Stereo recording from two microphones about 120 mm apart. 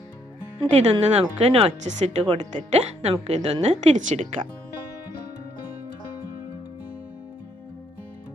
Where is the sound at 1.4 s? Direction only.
60° right (ahead or behind); by 4.3 s 75° right (ahead or behind).